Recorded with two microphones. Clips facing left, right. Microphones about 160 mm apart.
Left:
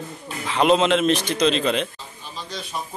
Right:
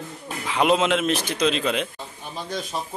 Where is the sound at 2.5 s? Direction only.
50° right (ahead or behind).